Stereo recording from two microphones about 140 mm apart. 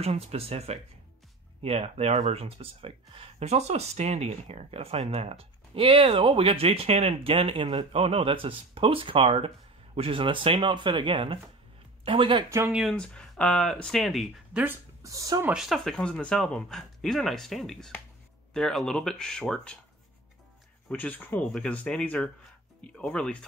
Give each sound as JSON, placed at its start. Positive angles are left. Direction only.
{"t": 0.0, "sound": "speech", "side_deg": -45}
{"t": 12.4, "sound": "speech", "side_deg": -20}
{"t": 12.9, "sound": "speech", "side_deg": 5}
{"t": 14.6, "sound": "speech", "side_deg": -20}
{"t": 15.4, "sound": "speech", "side_deg": -5}
{"t": 20.9, "sound": "speech", "side_deg": 10}